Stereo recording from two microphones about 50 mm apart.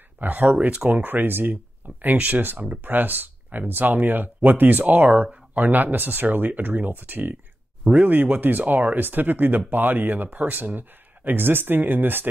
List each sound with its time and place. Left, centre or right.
0.2 s speech: right